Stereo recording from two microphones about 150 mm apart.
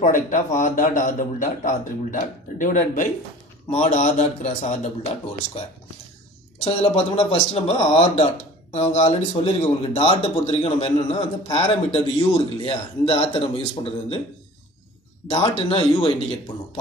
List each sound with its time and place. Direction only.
0.0 s a man's voice: 55° left (ahead or behind)
3.7 s a man's voice: 45° left (ahead or behind)
6.6 s a man's voice: 40° left (ahead or behind)
15.2 s speech: 30° left (ahead or behind)